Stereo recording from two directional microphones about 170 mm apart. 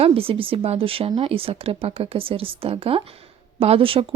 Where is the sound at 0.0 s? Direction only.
35° right (ahead or behind).